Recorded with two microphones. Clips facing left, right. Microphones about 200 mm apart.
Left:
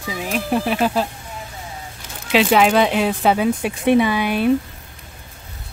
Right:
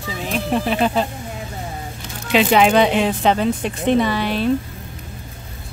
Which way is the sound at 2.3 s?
Centre (ahead or behind).